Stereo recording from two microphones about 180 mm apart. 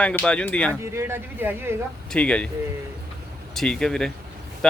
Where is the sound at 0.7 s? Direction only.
15° right (ahead or behind).